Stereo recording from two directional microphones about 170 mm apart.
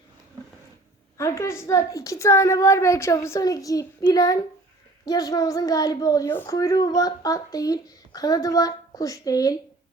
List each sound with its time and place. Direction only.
1.2 s a woman's voice: 15° left (ahead or behind)